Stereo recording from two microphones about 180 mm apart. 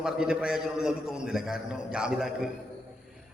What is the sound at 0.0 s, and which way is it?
A man's voice, 5° right (ahead or behind).